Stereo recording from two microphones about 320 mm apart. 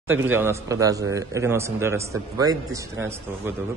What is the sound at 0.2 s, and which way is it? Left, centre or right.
A man's voice, centre.